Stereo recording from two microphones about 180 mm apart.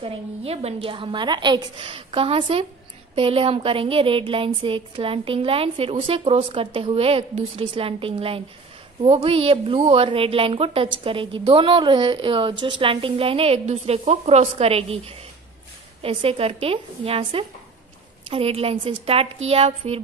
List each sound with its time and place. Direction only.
0.0 s a woman's voice: 35° right (ahead or behind)